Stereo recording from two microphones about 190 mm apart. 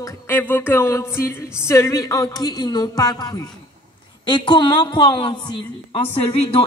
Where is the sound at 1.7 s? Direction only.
15° left (ahead or behind).